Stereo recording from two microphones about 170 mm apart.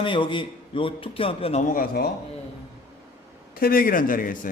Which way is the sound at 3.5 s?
60° left (ahead or behind).